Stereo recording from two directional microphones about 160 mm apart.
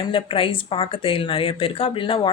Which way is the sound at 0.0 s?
35° left (ahead or behind).